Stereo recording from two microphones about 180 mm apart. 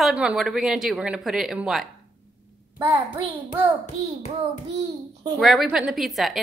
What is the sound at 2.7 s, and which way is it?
Speech, 15° right (ahead or behind).